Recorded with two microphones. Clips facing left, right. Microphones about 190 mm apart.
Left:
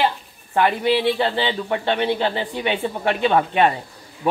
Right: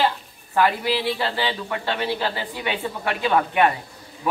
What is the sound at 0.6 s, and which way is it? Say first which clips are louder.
A man's voice: left 3 dB; 25° left (ahead or behind).